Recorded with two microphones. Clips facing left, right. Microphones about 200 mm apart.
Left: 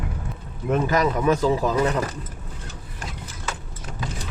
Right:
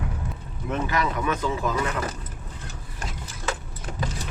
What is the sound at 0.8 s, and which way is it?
Speech, 40° left (ahead or behind).